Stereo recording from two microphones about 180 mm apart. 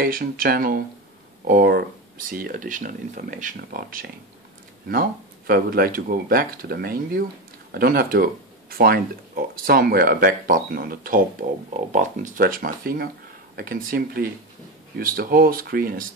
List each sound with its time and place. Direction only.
0.0 s speech: 55° right (ahead or behind)